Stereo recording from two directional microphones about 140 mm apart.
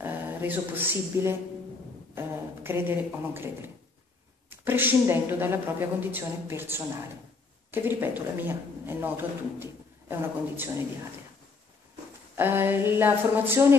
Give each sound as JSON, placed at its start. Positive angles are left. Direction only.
{"t": 0.0, "sound": "speech", "side_deg": -15}
{"t": 12.4, "sound": "speech", "side_deg": -15}